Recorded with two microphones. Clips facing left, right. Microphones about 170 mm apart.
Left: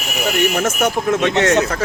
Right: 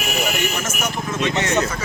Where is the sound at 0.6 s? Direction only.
60° left (ahead or behind).